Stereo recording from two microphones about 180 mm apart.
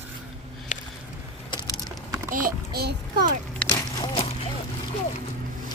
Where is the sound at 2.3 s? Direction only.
55° right (ahead or behind).